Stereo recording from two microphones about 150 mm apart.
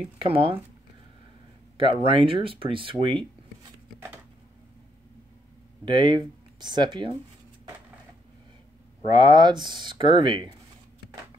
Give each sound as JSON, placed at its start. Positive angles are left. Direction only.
{"t": 0.2, "sound": "speech", "side_deg": -40}
{"t": 1.8, "sound": "speech", "side_deg": -35}
{"t": 5.9, "sound": "speech", "side_deg": -30}
{"t": 9.0, "sound": "speech", "side_deg": -30}